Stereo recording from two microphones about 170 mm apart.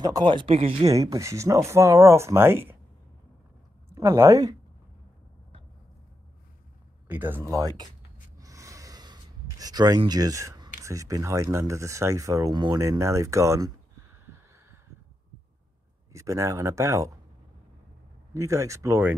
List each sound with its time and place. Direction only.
0.0 s speech: 25° right (ahead or behind)
0.8 s speech: 20° right (ahead or behind)
3.9 s speech: 20° right (ahead or behind)
7.1 s speech: 10° right (ahead or behind)
8.4 s gasp: 20° right (ahead or behind)
10.8 s speech: 20° right (ahead or behind)
16.1 s speech: 20° right (ahead or behind)
18.3 s speech: 20° right (ahead or behind)